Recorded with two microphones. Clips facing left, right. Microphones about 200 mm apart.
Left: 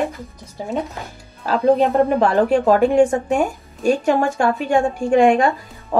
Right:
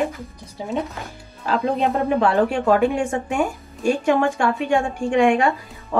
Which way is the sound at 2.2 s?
40° left (ahead or behind).